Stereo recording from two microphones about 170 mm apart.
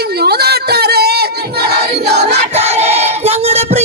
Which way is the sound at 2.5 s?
40° right (ahead or behind).